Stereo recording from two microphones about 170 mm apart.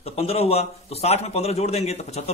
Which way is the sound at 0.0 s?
35° left (ahead or behind).